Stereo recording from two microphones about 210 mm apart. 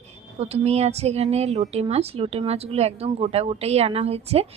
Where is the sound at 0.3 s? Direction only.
30° right (ahead or behind).